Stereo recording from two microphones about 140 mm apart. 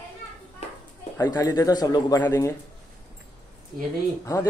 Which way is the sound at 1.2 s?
25° left (ahead or behind).